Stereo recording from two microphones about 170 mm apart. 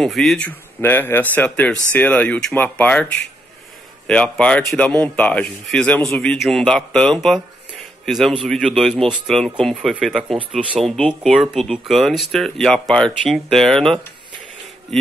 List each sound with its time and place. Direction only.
0.0 s speech: centre (ahead or behind)
4.1 s speech: 5° left (ahead or behind)